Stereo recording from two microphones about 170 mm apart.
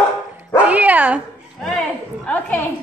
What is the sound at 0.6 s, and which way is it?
Dog, 10° right (ahead or behind).